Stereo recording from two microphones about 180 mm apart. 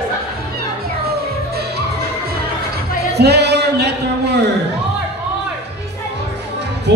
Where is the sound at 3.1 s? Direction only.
65° right (ahead or behind).